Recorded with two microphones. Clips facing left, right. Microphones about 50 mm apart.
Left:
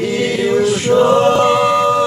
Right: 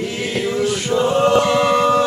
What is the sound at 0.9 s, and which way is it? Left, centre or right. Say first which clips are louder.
Choir: left 6 dB; left.